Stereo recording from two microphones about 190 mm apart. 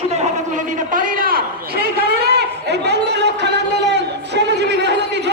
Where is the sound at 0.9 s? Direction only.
45° right (ahead or behind).